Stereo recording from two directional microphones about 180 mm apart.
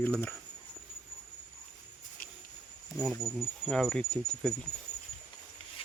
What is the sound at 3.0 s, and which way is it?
Speech, centre (ahead or behind).